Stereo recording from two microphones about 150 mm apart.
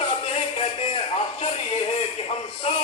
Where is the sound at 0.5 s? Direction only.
40° left (ahead or behind).